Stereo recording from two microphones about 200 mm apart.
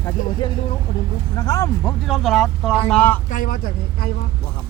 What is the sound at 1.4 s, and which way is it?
Speech, 15° left (ahead or behind).